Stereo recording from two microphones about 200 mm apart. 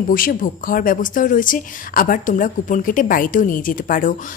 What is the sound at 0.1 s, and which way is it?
A woman's voice, 45° left (ahead or behind).